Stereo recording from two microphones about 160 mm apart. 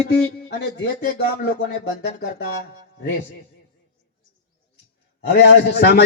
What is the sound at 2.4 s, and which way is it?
Speech, 90° left.